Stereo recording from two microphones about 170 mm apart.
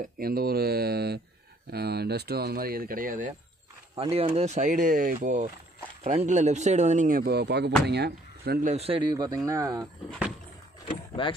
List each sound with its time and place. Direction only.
0.0 s speech: 60° right (ahead or behind)
3.9 s speech: 35° right (ahead or behind); by 8.6 s 70° right (ahead or behind)
8.6 s a man's voice: 35° right (ahead or behind); by 9.8 s 20° right (ahead or behind)